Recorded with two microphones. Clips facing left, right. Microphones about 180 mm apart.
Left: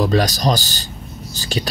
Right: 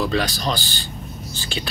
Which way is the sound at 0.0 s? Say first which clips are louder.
Left 5 dB; 40° left (ahead or behind).